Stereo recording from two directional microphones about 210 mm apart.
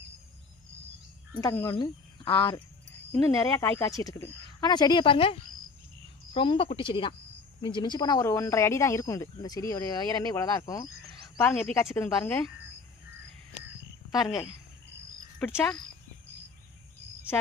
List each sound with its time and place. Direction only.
1.4 s speech: 15° left (ahead or behind)
14.2 s speech: 20° left (ahead or behind)
15.4 s speech: 5° left (ahead or behind)